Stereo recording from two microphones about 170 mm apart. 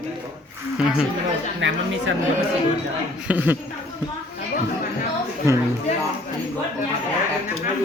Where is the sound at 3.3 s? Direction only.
10° right (ahead or behind).